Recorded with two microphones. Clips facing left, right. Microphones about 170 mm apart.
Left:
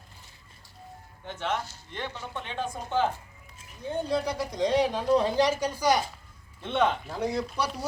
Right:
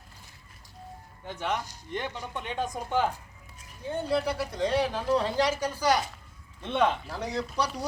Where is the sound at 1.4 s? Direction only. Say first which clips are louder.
Even; 15° right (ahead or behind).